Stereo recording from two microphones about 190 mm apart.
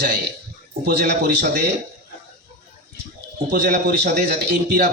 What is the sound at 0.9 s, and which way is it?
Speech, 55° right (ahead or behind).